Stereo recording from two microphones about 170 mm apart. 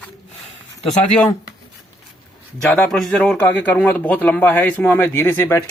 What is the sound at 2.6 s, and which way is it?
Speech, 5° left (ahead or behind).